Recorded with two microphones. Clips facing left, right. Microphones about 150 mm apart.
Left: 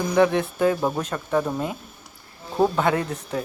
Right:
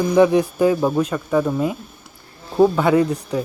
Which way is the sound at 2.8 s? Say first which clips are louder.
Right 6 dB; 10° right (ahead or behind).